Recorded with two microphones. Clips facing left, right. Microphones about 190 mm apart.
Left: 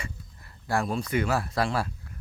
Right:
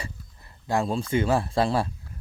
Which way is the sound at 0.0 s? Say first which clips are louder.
Right 1 dB; 20° right (ahead or behind).